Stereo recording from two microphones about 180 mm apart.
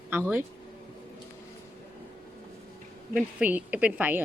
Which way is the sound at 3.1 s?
10° right (ahead or behind).